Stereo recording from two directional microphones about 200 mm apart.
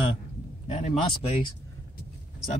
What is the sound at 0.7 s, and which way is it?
Speech, 35° left (ahead or behind).